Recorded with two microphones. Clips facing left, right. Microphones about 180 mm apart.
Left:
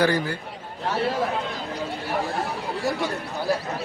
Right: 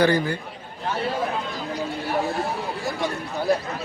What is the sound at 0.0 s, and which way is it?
Speech, 5° left (ahead or behind).